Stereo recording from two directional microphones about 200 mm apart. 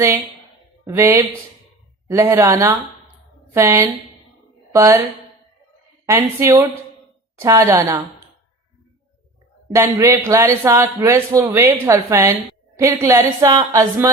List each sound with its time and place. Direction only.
0.9 s a man's voice: 15° right (ahead or behind)
2.2 s a man's voice: 15° right (ahead or behind)
6.1 s a man's voice: 15° right (ahead or behind)
9.6 s a man's voice: 15° right (ahead or behind)